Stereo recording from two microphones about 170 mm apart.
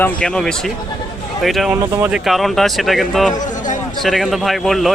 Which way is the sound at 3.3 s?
50° left (ahead or behind).